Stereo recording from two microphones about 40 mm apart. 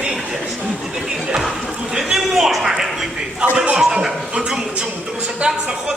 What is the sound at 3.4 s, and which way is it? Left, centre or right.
Speech, right.